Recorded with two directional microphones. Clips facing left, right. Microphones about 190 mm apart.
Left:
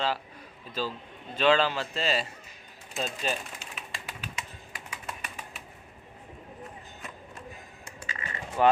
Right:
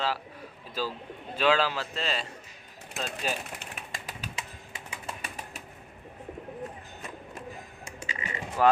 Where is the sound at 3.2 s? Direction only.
5° right (ahead or behind).